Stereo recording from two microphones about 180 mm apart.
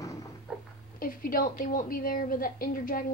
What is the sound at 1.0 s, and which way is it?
A woman's voice, 50° left (ahead or behind).